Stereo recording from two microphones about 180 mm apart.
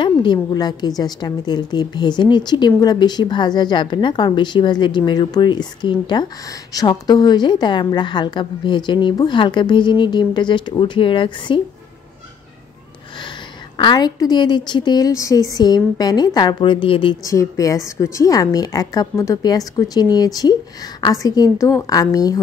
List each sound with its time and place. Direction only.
0.0 s a woman's voice: 25° left (ahead or behind)
13.7 s a woman's voice: 25° left (ahead or behind)